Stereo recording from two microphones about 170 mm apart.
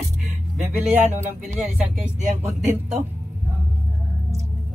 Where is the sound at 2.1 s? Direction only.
45° right (ahead or behind).